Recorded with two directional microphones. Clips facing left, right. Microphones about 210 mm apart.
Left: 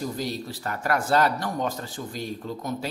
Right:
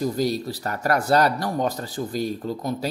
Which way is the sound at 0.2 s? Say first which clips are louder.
Right 7 dB; 40° right (ahead or behind).